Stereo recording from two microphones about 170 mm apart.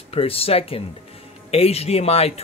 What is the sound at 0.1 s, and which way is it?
A man's voice, 35° left (ahead or behind).